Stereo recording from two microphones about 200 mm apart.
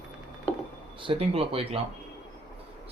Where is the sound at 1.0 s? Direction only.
25° right (ahead or behind).